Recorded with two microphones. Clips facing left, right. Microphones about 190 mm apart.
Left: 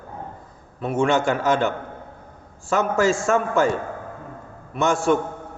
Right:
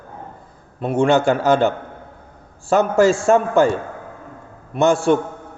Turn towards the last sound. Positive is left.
turn(degrees=-30)  # may be behind; listen again after turning